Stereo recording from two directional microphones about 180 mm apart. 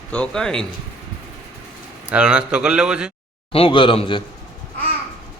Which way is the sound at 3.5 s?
30° left (ahead or behind).